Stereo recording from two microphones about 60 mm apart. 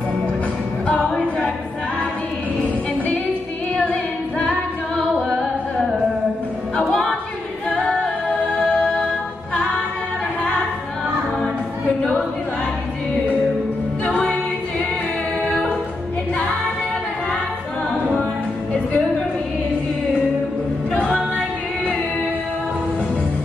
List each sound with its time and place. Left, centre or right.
0.8 s a capella: left
6.9 s music: centre
7.7 s a capella: left
14.0 s music: centre
15.4 s a capella: centre
18.7 s music: centre